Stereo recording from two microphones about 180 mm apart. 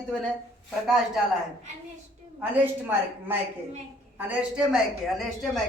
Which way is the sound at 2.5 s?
10° right (ahead or behind).